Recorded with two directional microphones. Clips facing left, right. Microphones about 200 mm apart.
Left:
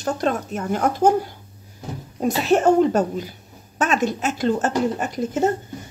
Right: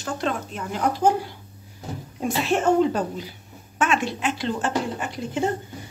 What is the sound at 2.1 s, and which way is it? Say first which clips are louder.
A woman's voice: left 5 dB; 40° left (ahead or behind).